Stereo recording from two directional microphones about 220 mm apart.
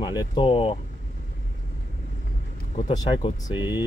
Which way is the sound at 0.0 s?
20° left (ahead or behind).